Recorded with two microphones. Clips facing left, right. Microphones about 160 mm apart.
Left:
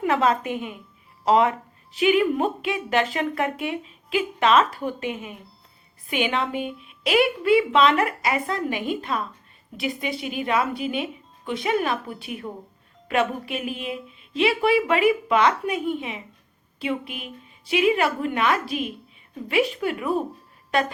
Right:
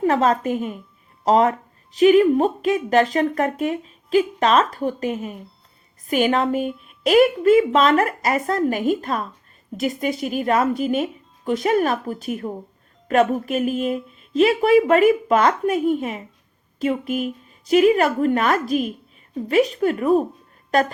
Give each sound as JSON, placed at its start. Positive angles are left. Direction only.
{"t": 0.0, "sound": "a woman's voice", "side_deg": -40}